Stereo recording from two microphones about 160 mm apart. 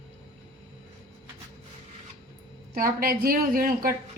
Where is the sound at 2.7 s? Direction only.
65° right (ahead or behind).